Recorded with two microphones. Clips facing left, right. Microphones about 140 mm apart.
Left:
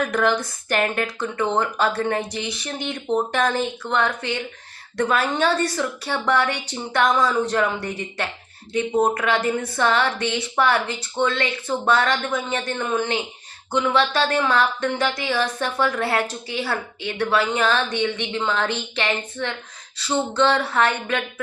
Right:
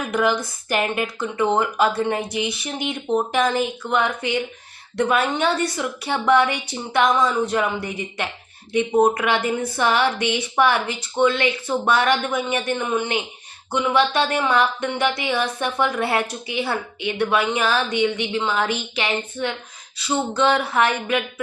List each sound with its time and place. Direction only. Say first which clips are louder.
0.1 s speech: even; 10° right (ahead or behind)